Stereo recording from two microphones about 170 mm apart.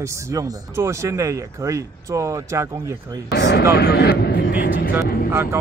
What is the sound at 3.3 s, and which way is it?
Speech, 80° left.